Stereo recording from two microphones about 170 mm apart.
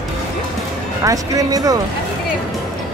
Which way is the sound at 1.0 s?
20° right (ahead or behind).